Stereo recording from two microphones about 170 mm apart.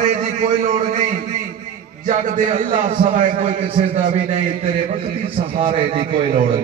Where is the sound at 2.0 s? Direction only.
50° right (ahead or behind).